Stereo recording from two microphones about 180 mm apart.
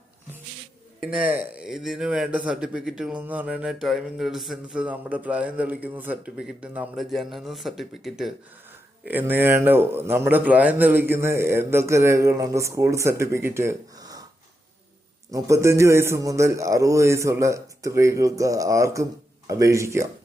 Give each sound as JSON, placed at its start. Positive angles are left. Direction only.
{"t": 1.0, "sound": "a man's voice", "side_deg": -5}
{"t": 15.3, "sound": "a man's voice", "side_deg": -15}